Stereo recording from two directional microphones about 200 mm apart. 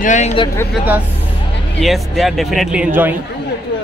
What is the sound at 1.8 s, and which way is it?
Speech, centre (ahead or behind).